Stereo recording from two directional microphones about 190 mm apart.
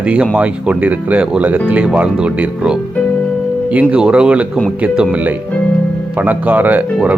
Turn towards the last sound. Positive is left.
turn(degrees=-5)  # may be behind; listen again after turning